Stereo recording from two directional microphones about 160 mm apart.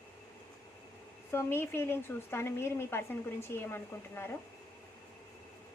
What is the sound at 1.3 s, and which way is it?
A woman's voice, 15° left (ahead or behind).